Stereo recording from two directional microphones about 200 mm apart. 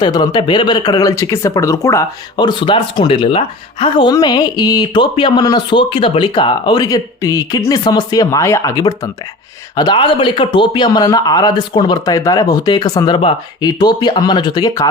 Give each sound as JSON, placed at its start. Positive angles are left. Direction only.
{"t": 0.0, "sound": "speech", "side_deg": 20}